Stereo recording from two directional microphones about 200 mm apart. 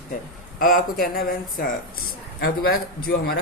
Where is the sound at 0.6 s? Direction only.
45° left (ahead or behind).